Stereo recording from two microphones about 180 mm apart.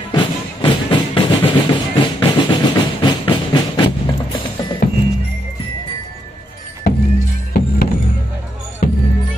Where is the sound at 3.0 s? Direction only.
25° left (ahead or behind).